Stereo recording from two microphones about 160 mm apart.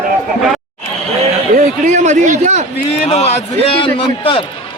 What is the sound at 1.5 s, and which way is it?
Speech, 50° right (ahead or behind).